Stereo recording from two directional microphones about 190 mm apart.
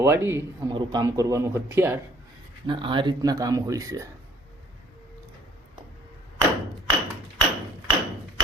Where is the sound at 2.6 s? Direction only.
25° right (ahead or behind).